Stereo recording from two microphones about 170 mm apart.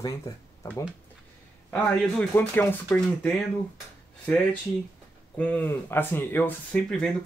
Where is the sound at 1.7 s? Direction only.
5° left (ahead or behind).